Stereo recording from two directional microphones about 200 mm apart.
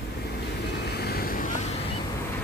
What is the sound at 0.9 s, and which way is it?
Vehicle, 50° left (ahead or behind).